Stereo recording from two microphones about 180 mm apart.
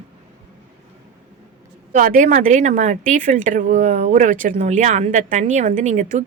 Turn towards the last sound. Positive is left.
turn(degrees=-40)  # may be behind; listen again after turning